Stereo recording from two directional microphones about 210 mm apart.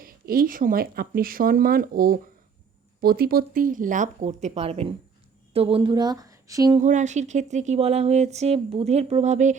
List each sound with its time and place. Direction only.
0.0 s a woman's voice: 45° right (ahead or behind); by 6.7 s 15° right (ahead or behind)
6.7 s speech: 35° right (ahead or behind)